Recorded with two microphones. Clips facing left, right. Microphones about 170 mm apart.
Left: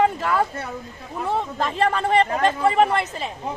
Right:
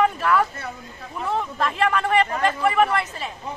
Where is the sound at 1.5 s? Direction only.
25° left (ahead or behind).